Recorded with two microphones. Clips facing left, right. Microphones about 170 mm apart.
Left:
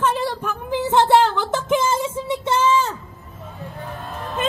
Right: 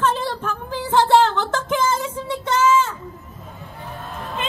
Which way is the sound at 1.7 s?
25° left (ahead or behind).